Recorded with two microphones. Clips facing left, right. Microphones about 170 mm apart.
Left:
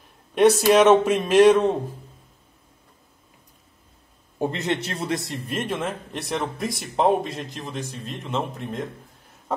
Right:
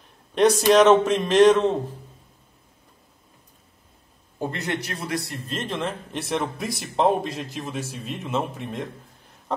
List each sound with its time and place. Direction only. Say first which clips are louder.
0.3 s speech: left 1 dB; 5° left (ahead or behind)
4.4 s a man's voice: left 3 dB; 20° left (ahead or behind)
5.6 s speech: left 1 dB; 5° left (ahead or behind)